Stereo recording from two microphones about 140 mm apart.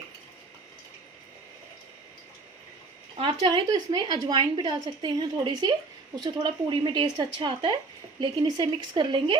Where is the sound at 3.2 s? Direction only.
40° right (ahead or behind).